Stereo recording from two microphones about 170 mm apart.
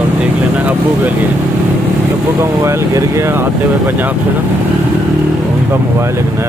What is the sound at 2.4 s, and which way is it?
Speech, 15° right (ahead or behind).